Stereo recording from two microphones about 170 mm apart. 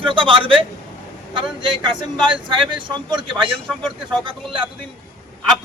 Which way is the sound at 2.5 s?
30° right (ahead or behind).